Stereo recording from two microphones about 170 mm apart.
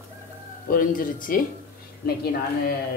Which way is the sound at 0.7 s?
55° left (ahead or behind).